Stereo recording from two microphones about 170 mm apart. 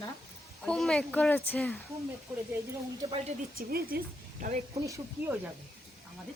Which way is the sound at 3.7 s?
60° right (ahead or behind).